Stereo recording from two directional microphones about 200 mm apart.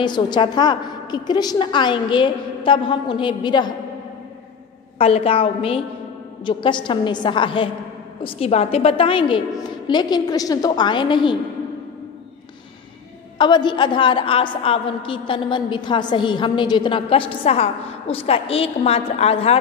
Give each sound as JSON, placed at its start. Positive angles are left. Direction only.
{"t": 0.0, "sound": "a woman's voice", "side_deg": 20}
{"t": 4.9, "sound": "a woman's voice", "side_deg": 30}
{"t": 13.4, "sound": "a woman's voice", "side_deg": 20}